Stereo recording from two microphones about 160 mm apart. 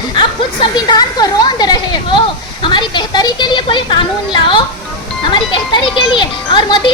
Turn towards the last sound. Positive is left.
turn(degrees=30)  # may be behind; listen again after turning